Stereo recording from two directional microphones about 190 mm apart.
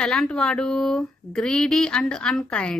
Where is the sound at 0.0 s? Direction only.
5° left (ahead or behind).